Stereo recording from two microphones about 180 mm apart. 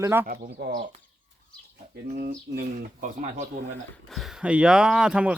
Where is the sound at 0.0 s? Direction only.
15° right (ahead or behind).